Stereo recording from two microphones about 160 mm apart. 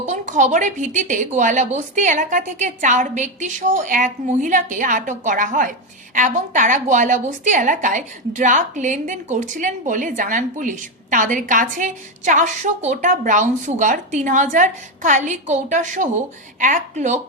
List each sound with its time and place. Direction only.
0.0 s a woman's voice: 45° right (ahead or behind)